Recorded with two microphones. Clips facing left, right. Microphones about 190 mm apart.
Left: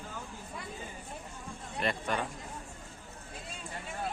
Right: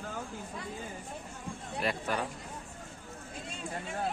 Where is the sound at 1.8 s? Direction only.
5° right (ahead or behind).